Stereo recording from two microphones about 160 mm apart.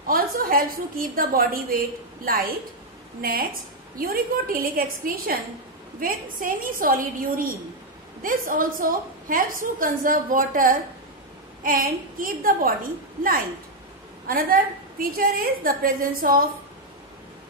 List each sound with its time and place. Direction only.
0.0 s a woman's voice: 65° right (ahead or behind)
14.2 s a woman's voice: 65° right (ahead or behind)